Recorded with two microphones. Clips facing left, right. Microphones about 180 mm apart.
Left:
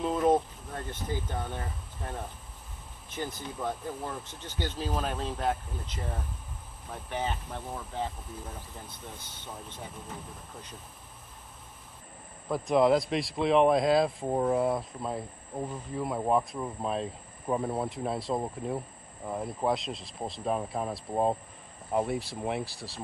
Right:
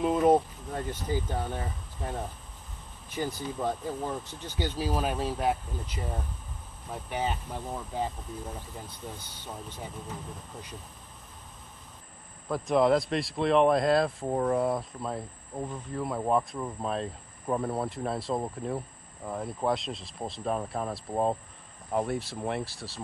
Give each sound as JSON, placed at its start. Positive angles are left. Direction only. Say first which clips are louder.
{"t": 0.0, "sound": "speech", "louder": "right 3 dB", "side_deg": -10}
{"t": 12.4, "sound": "a man's voice", "louder": "even", "side_deg": 0}